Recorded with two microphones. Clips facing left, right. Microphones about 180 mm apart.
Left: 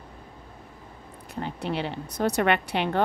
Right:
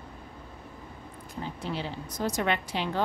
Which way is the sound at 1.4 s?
65° left (ahead or behind).